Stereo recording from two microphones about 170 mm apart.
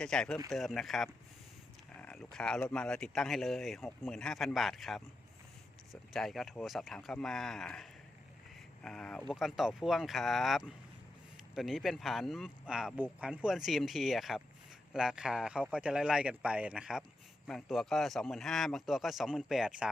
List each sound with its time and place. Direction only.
0.0 s speech: 5° left (ahead or behind)